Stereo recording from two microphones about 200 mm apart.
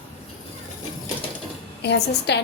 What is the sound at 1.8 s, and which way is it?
Speech, 60° left (ahead or behind).